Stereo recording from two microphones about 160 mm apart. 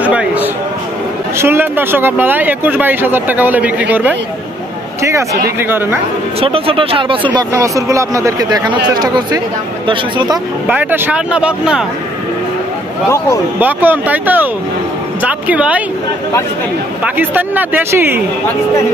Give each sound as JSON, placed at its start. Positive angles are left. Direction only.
{"t": 0.0, "sound": "a sound", "side_deg": -10}
{"t": 1.4, "sound": "speech", "side_deg": -15}
{"t": 6.4, "sound": "speech", "side_deg": -35}
{"t": 7.3, "sound": "speech", "side_deg": -20}
{"t": 10.7, "sound": "speech", "side_deg": -10}
{"t": 13.6, "sound": "speech", "side_deg": -10}
{"t": 17.0, "sound": "speech", "side_deg": -10}